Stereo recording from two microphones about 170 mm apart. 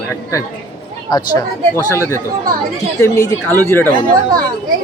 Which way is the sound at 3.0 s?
15° left (ahead or behind).